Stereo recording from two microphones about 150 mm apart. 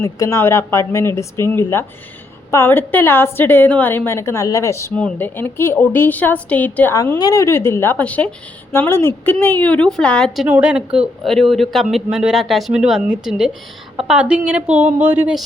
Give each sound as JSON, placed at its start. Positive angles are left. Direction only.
{"t": 0.0, "sound": "a woman's voice", "side_deg": 20}
{"t": 6.9, "sound": "a woman's voice", "side_deg": 20}
{"t": 10.4, "sound": "a woman's voice", "side_deg": -5}